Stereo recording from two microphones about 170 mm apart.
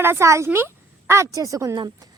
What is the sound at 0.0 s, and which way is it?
A woman's voice, 15° right (ahead or behind).